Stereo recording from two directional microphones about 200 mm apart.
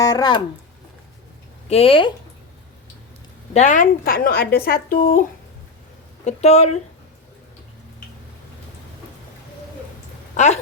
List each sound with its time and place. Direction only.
0.0 s speech: 20° left (ahead or behind)
1.7 s speech: 30° left (ahead or behind)
3.5 s speech: 35° left (ahead or behind)
6.2 s speech: 35° left (ahead or behind)
10.3 s speech: 35° left (ahead or behind)